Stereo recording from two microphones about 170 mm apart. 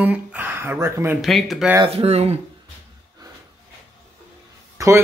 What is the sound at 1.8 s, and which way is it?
Speech, 35° right (ahead or behind).